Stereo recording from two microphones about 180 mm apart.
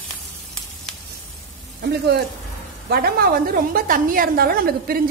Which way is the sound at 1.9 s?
65° right (ahead or behind).